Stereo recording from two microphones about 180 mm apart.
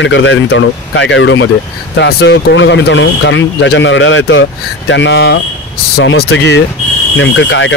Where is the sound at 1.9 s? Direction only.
65° left (ahead or behind).